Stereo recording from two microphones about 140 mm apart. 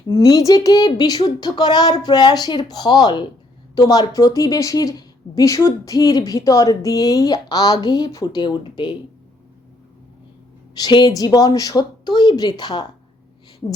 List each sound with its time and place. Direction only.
0.1 s a woman's voice: 25° left (ahead or behind)
10.8 s a woman's voice: 30° left (ahead or behind)